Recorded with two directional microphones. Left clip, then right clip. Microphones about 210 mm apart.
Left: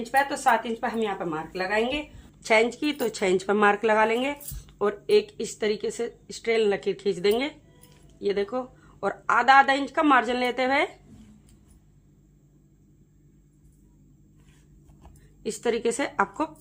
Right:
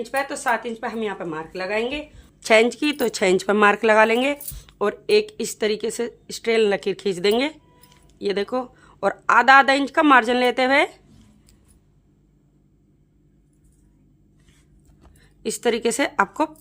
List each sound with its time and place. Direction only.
0.1 s speech: 45° right (ahead or behind)
15.4 s speech: 45° right (ahead or behind)